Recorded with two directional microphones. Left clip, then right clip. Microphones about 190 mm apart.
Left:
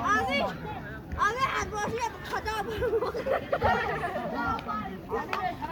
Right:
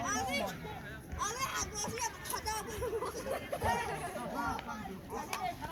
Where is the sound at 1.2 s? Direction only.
60° right (ahead or behind).